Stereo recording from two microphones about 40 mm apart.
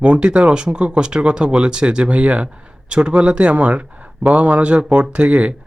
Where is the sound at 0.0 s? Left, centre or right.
Right.